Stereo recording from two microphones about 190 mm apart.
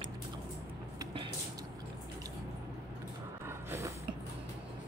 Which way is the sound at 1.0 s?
30° right (ahead or behind).